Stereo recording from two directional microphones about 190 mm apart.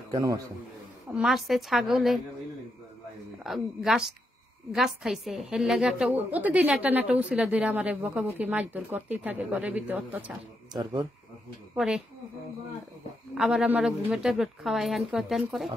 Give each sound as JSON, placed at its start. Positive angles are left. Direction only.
{"t": 0.1, "sound": "a man's voice", "side_deg": -20}
{"t": 1.1, "sound": "a woman's voice", "side_deg": 0}
{"t": 3.4, "sound": "a woman's voice", "side_deg": 0}
{"t": 10.7, "sound": "speech", "side_deg": -20}
{"t": 11.7, "sound": "speech", "side_deg": -5}
{"t": 13.3, "sound": "a woman's voice", "side_deg": -5}